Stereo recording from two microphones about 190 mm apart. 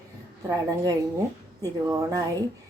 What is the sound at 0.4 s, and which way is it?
A woman's voice, 20° right (ahead or behind).